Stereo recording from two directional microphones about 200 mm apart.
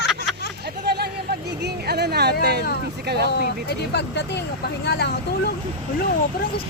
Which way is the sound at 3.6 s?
60° left (ahead or behind).